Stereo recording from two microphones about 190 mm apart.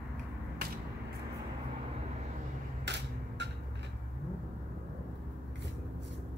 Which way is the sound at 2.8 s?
65° right (ahead or behind).